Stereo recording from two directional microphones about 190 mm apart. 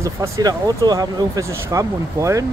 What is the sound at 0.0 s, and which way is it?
Speech, 20° right (ahead or behind).